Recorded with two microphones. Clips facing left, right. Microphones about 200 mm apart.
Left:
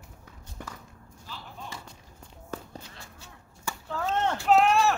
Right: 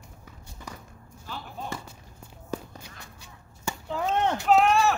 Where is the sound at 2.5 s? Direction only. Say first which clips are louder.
Right 4 dB; 15° right (ahead or behind).